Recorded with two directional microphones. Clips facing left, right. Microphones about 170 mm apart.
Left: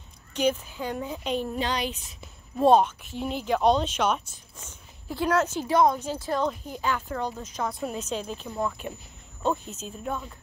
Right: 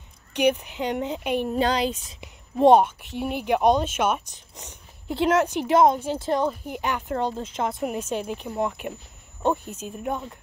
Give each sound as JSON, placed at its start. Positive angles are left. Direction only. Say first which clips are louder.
{"t": 0.3, "sound": "speech", "louder": "right 4 dB", "side_deg": -65}
{"t": 0.7, "sound": "speech", "louder": "right 5 dB", "side_deg": -20}
{"t": 1.5, "sound": "speech", "louder": "right 6 dB", "side_deg": -30}
{"t": 2.1, "sound": "speech", "louder": "right 4 dB", "side_deg": -20}
{"t": 7.2, "sound": "speech", "louder": "right 4 dB", "side_deg": -30}
{"t": 8.2, "sound": "speech", "louder": "right 3 dB", "side_deg": -15}